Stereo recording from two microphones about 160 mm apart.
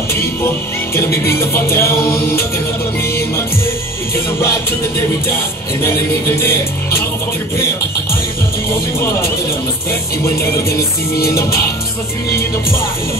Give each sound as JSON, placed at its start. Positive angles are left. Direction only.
{"t": 0.9, "sound": "music", "side_deg": 15}
{"t": 10.2, "sound": "music", "side_deg": 20}